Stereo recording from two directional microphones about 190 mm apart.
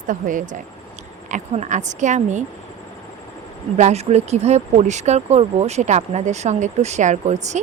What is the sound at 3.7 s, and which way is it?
A woman's voice, 35° right (ahead or behind).